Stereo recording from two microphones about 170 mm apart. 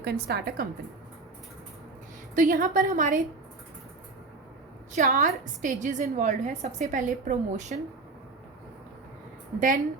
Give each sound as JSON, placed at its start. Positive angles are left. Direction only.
{"t": 0.0, "sound": "a woman's voice", "side_deg": -70}
{"t": 2.3, "sound": "a woman's voice", "side_deg": -50}
{"t": 4.9, "sound": "a woman's voice", "side_deg": -50}
{"t": 9.6, "sound": "a woman's voice", "side_deg": -50}